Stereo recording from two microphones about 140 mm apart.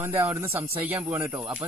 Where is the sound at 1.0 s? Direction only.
30° right (ahead or behind).